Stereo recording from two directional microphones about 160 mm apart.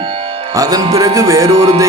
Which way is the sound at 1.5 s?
35° right (ahead or behind).